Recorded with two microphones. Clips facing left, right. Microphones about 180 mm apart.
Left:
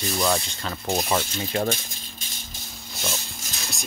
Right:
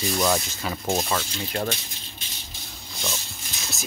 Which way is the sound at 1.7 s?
45° left (ahead or behind).